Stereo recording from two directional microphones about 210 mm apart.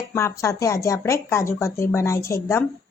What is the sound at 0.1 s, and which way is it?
Speech, 15° left (ahead or behind).